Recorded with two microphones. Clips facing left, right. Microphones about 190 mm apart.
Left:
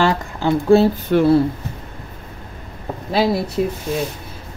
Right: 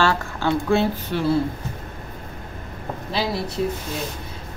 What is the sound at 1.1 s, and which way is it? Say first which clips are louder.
Speech: left 10 dB; 55° left (ahead or behind).